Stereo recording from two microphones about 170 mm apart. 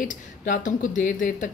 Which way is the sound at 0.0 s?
50° left (ahead or behind).